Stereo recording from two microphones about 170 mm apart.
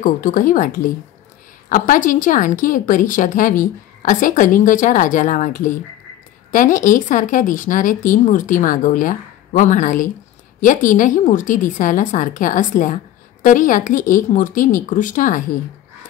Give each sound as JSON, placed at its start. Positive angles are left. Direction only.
{"t": 0.0, "sound": "a woman's voice", "side_deg": 50}